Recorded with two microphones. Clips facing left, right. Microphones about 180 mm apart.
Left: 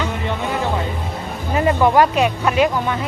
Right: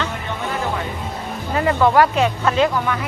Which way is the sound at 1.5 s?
20° left (ahead or behind).